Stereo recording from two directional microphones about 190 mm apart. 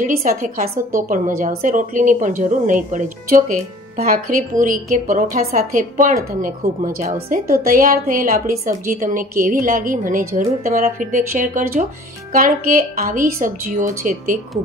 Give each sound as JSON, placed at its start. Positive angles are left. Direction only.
{"t": 0.0, "sound": "a woman's voice", "side_deg": -45}